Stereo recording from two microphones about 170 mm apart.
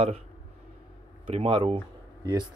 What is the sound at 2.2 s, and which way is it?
Speech, 25° right (ahead or behind).